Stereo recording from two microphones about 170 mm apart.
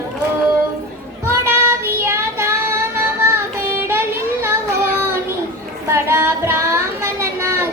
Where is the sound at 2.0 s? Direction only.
15° right (ahead or behind).